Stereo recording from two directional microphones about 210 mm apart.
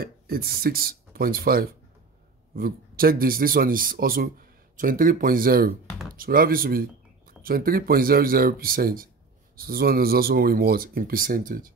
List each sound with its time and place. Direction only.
0.0 s a man's voice: 45° right (ahead or behind)